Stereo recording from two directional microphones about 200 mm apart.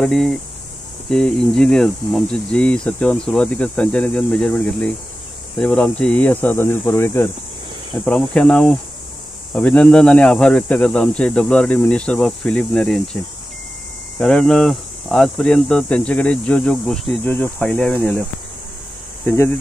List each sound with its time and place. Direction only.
0.0 s speech: 5° left (ahead or behind)
19.2 s speech: 15° left (ahead or behind)